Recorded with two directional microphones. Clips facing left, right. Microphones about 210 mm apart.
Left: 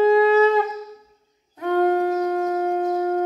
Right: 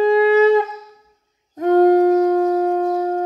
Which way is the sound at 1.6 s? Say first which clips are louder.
Right 7 dB; 40° right (ahead or behind).